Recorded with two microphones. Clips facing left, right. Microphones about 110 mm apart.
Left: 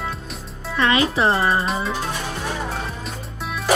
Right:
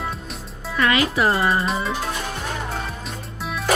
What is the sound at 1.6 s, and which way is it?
Music, centre (ahead or behind).